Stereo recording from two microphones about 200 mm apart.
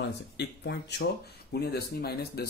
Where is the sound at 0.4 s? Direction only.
55° left (ahead or behind).